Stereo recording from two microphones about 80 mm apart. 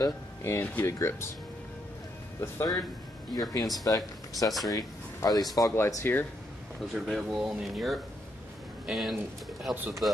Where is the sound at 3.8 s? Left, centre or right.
Left.